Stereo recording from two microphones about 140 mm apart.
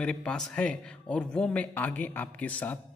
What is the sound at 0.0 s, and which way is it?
Speech, 5° left (ahead or behind).